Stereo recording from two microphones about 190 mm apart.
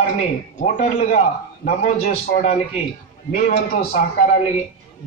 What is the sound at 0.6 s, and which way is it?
A man's voice, 45° left (ahead or behind).